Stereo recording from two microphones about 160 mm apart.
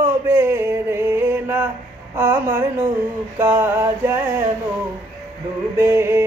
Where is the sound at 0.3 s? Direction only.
15° right (ahead or behind).